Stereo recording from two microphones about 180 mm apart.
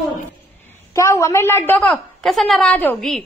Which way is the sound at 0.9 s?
15° left (ahead or behind).